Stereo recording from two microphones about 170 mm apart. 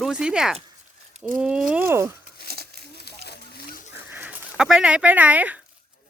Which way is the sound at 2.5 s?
65° right (ahead or behind).